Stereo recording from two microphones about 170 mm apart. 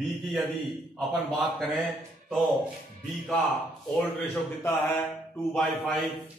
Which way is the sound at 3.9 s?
10° left (ahead or behind).